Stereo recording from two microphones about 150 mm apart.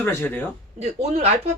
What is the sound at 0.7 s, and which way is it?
Speech, 45° right (ahead or behind).